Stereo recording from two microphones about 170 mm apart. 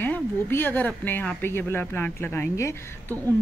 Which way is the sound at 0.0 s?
10° left (ahead or behind).